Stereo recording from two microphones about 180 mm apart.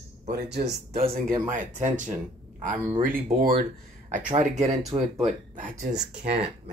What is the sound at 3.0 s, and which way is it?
Speech, 55° right (ahead or behind).